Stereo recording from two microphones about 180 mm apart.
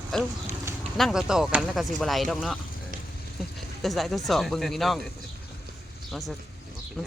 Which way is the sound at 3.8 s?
Centre (ahead or behind).